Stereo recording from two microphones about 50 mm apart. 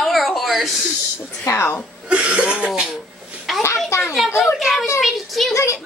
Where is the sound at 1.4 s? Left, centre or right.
Left.